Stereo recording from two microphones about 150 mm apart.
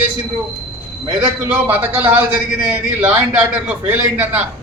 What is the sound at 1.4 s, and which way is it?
A man's voice, 10° right (ahead or behind).